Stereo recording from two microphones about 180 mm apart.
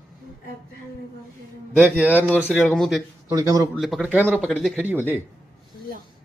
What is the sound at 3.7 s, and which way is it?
A man's voice, centre (ahead or behind).